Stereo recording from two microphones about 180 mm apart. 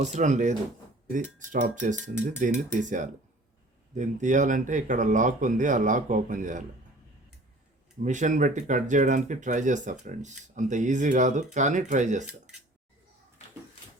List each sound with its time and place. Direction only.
0.0 s speech: 40° right (ahead or behind)
8.0 s speech: 45° right (ahead or behind)